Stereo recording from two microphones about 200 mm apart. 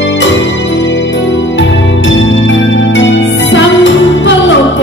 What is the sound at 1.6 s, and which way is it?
Music, 65° left (ahead or behind).